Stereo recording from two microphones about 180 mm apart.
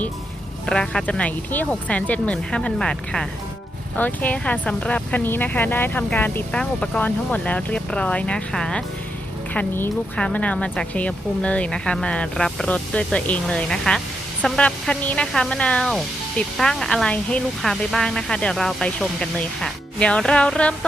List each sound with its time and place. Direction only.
0.6 s speech: 5° left (ahead or behind)